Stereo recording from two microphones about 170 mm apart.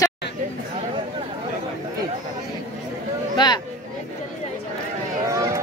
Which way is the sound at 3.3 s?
25° left (ahead or behind).